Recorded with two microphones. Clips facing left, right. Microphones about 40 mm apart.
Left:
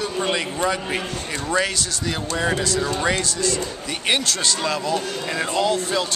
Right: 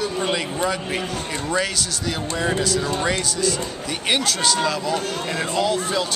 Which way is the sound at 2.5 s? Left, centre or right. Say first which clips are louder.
Right 2 dB; centre.